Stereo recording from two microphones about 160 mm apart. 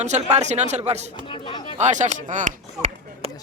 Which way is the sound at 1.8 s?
45° right (ahead or behind).